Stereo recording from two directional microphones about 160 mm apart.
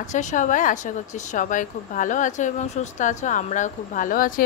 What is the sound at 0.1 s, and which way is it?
Speech, 50° left (ahead or behind).